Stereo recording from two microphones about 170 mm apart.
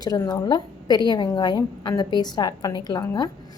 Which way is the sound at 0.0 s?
25° left (ahead or behind).